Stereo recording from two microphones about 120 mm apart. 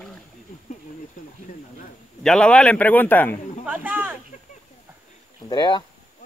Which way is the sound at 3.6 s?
10° right (ahead or behind).